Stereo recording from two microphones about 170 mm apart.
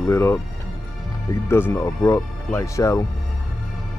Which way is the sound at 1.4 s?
15° left (ahead or behind).